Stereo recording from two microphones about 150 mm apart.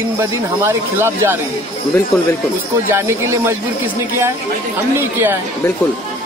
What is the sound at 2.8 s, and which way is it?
Speech, 20° right (ahead or behind).